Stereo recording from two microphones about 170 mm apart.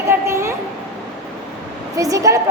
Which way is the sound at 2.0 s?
20° right (ahead or behind).